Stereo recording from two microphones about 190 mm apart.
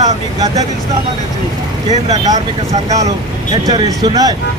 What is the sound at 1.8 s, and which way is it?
Speech, 35° right (ahead or behind).